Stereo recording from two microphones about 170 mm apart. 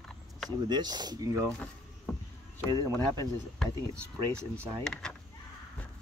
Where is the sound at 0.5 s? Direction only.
25° right (ahead or behind).